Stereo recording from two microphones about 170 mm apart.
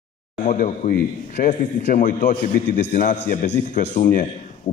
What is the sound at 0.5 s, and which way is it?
A man's voice, 50° left (ahead or behind).